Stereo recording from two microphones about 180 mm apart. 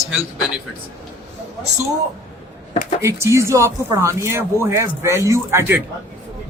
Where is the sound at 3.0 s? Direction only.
15° right (ahead or behind).